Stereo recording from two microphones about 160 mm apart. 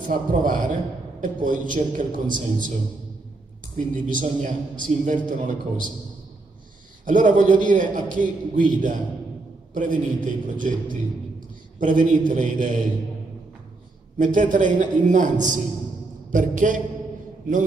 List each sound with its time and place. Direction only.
0.1 s a man's voice: 55° right (ahead or behind)
3.7 s a man's voice: 55° right (ahead or behind)
7.1 s a man's voice: 55° right (ahead or behind)
14.1 s a man's voice: 55° right (ahead or behind)